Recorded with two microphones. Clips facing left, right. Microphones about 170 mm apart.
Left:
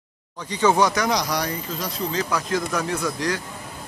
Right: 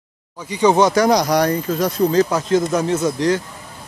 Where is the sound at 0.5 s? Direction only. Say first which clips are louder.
Right 5 dB; 15° right (ahead or behind).